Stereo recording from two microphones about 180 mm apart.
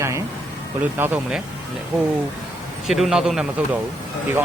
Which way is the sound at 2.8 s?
Centre (ahead or behind).